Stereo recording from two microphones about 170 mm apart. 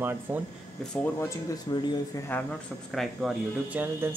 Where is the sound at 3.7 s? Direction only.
10° right (ahead or behind).